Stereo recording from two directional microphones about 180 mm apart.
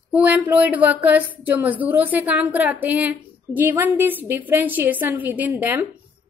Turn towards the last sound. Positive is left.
turn(degrees=-10)  # may be behind; listen again after turning